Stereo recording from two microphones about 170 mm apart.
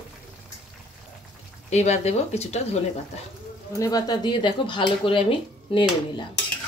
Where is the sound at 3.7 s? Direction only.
20° left (ahead or behind).